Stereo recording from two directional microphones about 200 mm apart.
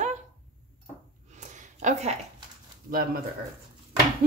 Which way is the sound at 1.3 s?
35° right (ahead or behind).